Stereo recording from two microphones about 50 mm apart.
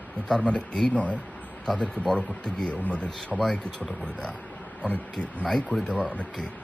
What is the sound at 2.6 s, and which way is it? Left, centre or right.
Speech, left.